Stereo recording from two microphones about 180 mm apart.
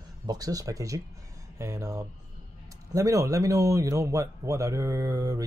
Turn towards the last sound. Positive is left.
turn(degrees=-20)  # may be behind; listen again after turning